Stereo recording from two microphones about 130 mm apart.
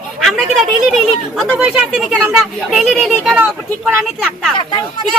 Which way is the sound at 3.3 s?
10° right (ahead or behind).